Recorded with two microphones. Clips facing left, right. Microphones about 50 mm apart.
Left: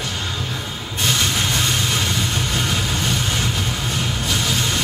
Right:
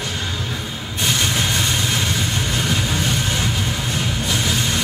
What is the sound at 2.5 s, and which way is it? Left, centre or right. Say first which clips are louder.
Vehicle: right 1 dB; right.